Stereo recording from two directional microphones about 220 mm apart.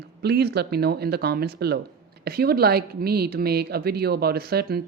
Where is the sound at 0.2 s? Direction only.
45° right (ahead or behind).